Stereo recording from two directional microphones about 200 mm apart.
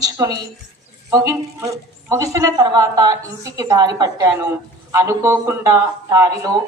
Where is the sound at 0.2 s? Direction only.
15° right (ahead or behind).